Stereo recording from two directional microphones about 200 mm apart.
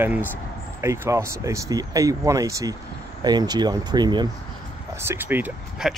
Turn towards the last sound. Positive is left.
turn(degrees=-5)  # may be behind; listen again after turning